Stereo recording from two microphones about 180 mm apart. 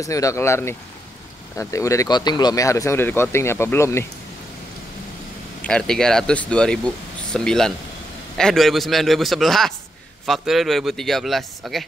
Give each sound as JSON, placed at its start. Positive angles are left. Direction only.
{"t": 0.0, "sound": "speech", "side_deg": 20}
{"t": 5.6, "sound": "a man's voice", "side_deg": 5}